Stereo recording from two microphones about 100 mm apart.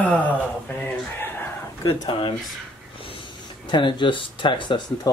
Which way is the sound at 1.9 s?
55° left (ahead or behind).